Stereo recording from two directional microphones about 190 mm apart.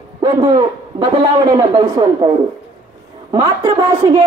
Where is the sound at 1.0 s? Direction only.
20° right (ahead or behind).